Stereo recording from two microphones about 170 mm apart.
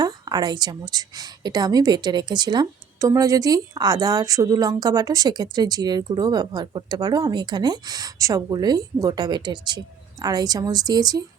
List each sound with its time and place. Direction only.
0.0 s a woman's voice: 25° right (ahead or behind)